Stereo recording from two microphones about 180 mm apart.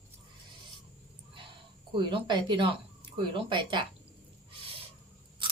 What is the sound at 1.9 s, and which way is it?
Speech, 25° right (ahead or behind).